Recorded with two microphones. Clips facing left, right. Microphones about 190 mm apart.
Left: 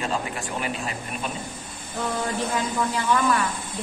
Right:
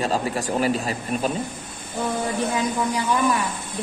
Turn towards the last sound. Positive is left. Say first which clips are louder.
# right 1 dB
turn(degrees=-15)  # may be behind; listen again after turning